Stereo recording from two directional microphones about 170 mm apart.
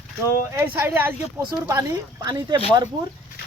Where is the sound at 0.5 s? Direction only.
10° right (ahead or behind).